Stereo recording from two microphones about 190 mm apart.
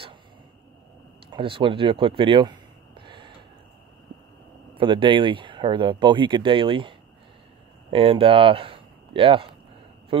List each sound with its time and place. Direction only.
1.3 s speech: 25° right (ahead or behind)
4.7 s speech: 25° right (ahead or behind)